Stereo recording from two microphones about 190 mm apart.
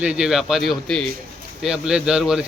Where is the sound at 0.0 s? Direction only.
5° right (ahead or behind).